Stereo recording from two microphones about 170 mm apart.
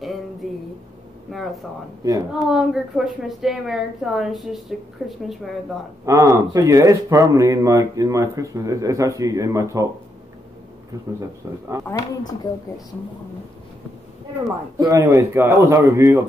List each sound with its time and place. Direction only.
1.3 s a woman's voice: centre (ahead or behind)
6.0 s speech: 20° right (ahead or behind)
11.9 s a woman's voice: 20° left (ahead or behind)
14.8 s a man's voice: 20° right (ahead or behind)